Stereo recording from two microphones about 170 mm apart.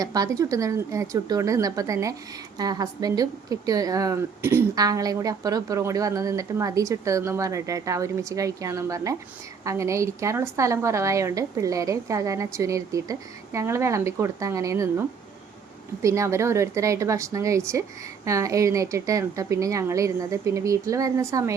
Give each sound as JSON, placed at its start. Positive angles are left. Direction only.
{"t": 0.0, "sound": "a woman's voice", "side_deg": -20}
{"t": 16.0, "sound": "a woman's voice", "side_deg": -15}